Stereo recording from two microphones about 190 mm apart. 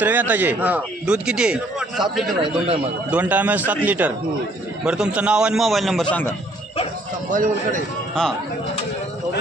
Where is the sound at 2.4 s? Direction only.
30° right (ahead or behind).